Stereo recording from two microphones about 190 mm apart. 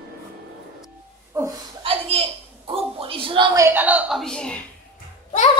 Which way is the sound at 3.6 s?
10° right (ahead or behind).